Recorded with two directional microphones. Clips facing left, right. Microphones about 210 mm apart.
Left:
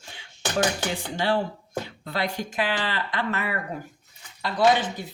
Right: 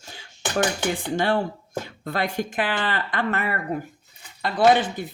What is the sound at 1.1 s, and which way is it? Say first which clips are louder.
Speech: right 1 dB; 50° right (ahead or behind).